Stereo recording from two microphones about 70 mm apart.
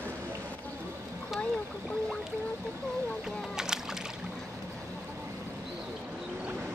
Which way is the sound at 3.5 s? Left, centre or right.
Centre.